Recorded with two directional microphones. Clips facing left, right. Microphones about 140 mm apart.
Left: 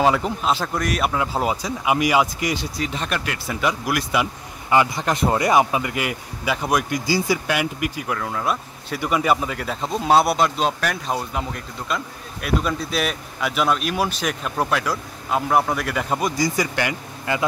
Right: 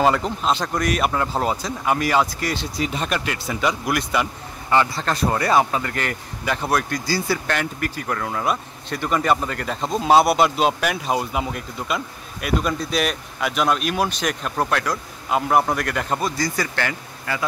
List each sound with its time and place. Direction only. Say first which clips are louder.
0.0 s speech: even; 5° left (ahead or behind)
2.8 s speech: right 2 dB; 5° right (ahead or behind)
16.2 s speech: left 2 dB; 15° left (ahead or behind)